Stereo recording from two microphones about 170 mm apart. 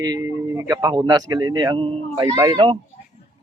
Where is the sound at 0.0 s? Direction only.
20° right (ahead or behind).